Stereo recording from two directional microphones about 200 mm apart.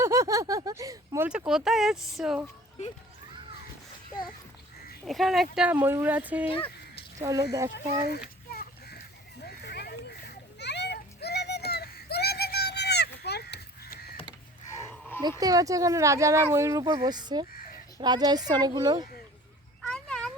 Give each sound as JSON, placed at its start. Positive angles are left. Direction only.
{"t": 0.0, "sound": "a sound", "side_deg": -15}
{"t": 5.0, "sound": "speech", "side_deg": 0}
{"t": 6.5, "sound": "music", "side_deg": 30}
{"t": 7.2, "sound": "speech", "side_deg": -15}
{"t": 9.4, "sound": "children playing", "side_deg": 55}
{"t": 14.8, "sound": "a sound", "side_deg": 10}
{"t": 15.2, "sound": "speech", "side_deg": -20}
{"t": 19.8, "sound": "cat", "side_deg": 5}